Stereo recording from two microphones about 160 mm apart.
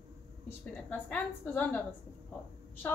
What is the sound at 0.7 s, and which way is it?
A woman's voice, 10° left (ahead or behind).